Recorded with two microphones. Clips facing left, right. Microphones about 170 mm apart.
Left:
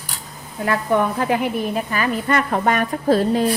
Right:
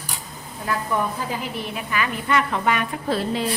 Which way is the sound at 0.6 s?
65° left (ahead or behind).